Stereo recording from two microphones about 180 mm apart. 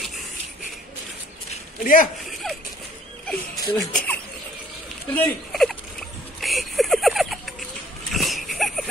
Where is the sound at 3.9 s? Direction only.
5° left (ahead or behind).